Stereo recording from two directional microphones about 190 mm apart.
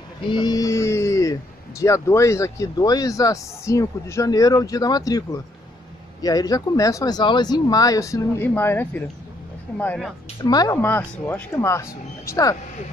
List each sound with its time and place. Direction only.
0.3 s music: 20° left (ahead or behind)
1.8 s speech: 15° left (ahead or behind)
10.4 s speech: 20° left (ahead or behind)